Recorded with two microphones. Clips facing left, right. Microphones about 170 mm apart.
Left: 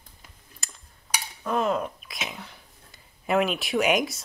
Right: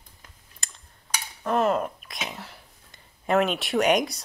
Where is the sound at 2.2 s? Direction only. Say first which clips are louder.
Right 1 dB; centre (ahead or behind).